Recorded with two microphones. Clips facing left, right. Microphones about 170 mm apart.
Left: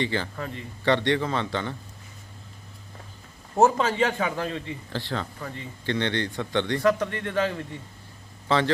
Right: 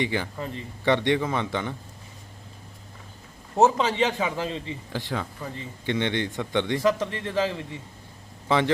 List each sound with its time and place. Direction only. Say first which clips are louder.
0.0 s a man's voice: even; 15° right (ahead or behind)
3.5 s a man's voice: even; centre (ahead or behind)
4.9 s a man's voice: right 1 dB; 15° right (ahead or behind)